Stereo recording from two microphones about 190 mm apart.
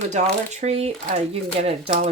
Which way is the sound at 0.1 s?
40° right (ahead or behind).